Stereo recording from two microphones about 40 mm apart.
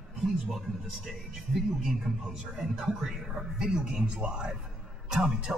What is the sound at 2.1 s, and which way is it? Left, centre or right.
Speech, centre.